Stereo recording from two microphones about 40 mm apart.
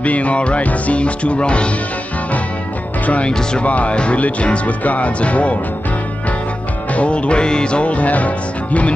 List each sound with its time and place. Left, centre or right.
0.0 s music: left
3.1 s music: left
6.9 s music: left